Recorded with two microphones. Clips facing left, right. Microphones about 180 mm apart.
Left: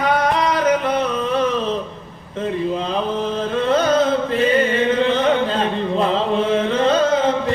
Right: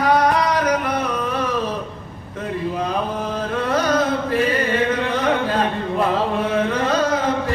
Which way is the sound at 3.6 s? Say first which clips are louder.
Left 3 dB; 25° left (ahead or behind).